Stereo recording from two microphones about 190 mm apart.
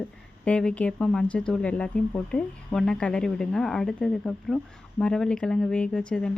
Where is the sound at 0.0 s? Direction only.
5° left (ahead or behind).